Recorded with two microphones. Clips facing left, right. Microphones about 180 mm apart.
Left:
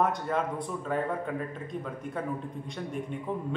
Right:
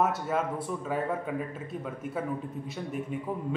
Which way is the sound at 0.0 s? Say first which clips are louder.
Even; 5° right (ahead or behind).